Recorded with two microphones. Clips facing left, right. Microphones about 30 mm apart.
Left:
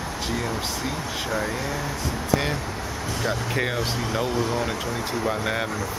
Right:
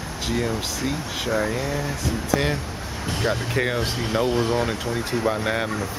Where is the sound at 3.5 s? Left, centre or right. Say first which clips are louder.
Right 2 dB; centre.